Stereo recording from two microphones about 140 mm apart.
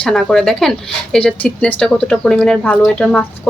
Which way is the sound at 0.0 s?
5° left (ahead or behind).